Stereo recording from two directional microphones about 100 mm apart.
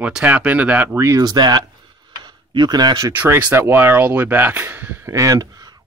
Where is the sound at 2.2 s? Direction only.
45° right (ahead or behind).